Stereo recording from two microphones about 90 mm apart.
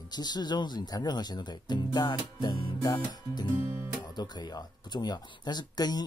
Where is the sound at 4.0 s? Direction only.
50° left (ahead or behind).